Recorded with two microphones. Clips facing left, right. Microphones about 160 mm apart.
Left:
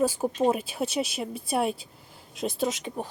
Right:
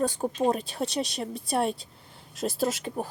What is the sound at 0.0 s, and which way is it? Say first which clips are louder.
Speech: left 2 dB; 5° left (ahead or behind).